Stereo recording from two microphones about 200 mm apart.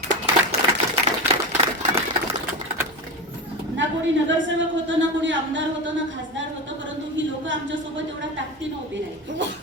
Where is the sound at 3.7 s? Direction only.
70° right (ahead or behind).